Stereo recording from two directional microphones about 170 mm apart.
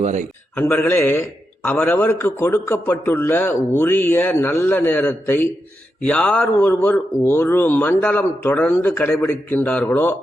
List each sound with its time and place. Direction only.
0.0 s a man's voice: 45° right (ahead or behind)
0.5 s a man's voice: 10° left (ahead or behind)